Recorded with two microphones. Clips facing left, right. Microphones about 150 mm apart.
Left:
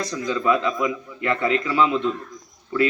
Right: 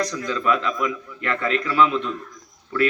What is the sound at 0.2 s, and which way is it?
A man's voice, 20° left (ahead or behind).